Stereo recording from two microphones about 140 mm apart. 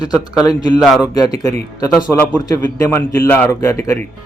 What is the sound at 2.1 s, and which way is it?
Speech, 15° left (ahead or behind).